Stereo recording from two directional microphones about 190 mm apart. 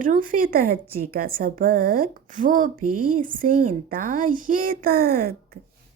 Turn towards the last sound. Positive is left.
turn(degrees=-50)  # may be behind; listen again after turning